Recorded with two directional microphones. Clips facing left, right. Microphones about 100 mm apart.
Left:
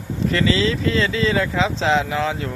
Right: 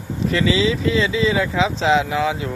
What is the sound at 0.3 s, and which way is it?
Speech, 15° right (ahead or behind).